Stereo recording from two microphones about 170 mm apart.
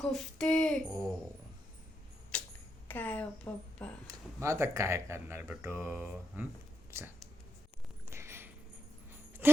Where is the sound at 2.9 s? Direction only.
10° left (ahead or behind).